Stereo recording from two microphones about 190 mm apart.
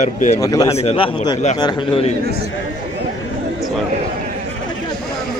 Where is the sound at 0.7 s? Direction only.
30° left (ahead or behind).